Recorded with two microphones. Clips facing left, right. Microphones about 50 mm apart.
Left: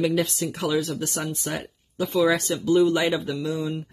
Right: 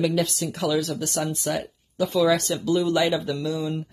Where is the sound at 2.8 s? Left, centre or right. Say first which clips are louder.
Even; centre.